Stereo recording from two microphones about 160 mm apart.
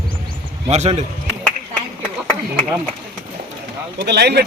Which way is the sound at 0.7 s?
40° right (ahead or behind).